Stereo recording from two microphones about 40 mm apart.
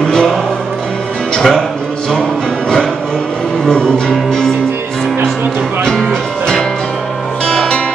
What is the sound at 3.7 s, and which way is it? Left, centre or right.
Music, centre.